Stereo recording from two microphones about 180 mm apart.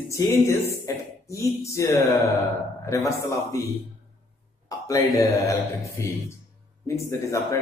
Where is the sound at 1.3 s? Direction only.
15° left (ahead or behind).